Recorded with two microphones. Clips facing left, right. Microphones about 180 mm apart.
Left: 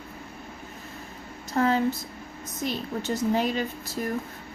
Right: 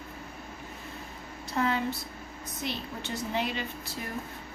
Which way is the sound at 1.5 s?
40° left (ahead or behind).